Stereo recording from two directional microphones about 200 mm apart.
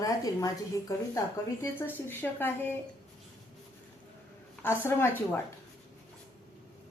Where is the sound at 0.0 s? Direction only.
15° left (ahead or behind).